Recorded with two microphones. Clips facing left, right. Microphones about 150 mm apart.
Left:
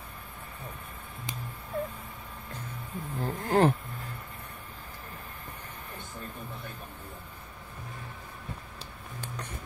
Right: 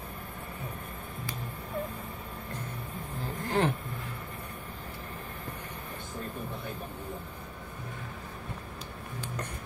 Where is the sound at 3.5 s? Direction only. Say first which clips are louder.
Left 5 dB; 40° left (ahead or behind).